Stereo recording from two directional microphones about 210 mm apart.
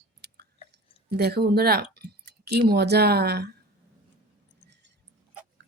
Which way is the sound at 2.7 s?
50° right (ahead or behind).